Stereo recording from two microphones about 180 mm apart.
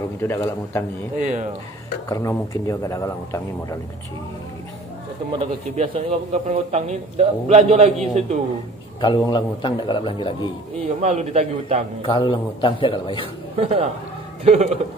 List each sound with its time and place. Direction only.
0.2 s a man's voice: 15° left (ahead or behind)
1.1 s speech: 45° right (ahead or behind)
2.0 s a man's voice: 20° left (ahead or behind)
5.3 s a man's voice: 35° right (ahead or behind)
9.0 s a man's voice: 25° left (ahead or behind)
10.8 s a man's voice: 40° right (ahead or behind)
12.0 s a man's voice: 30° left (ahead or behind)
13.6 s a man's voice: 35° right (ahead or behind)